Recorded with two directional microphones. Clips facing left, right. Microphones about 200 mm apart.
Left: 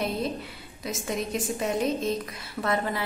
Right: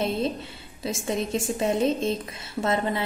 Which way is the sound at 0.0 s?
25° right (ahead or behind).